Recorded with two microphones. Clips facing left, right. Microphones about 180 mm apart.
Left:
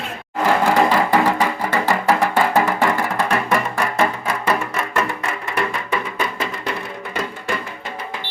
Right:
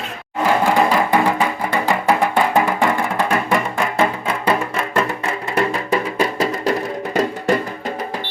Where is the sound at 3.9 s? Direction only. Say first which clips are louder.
Right 2 dB; 25° right (ahead or behind).